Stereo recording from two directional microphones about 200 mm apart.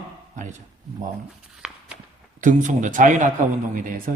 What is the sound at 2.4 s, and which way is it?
Speech, 40° right (ahead or behind).